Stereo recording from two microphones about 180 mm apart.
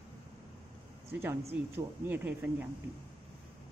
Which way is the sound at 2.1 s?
10° right (ahead or behind).